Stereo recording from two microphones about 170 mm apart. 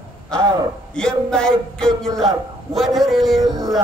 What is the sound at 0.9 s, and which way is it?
A man's voice, 5° left (ahead or behind).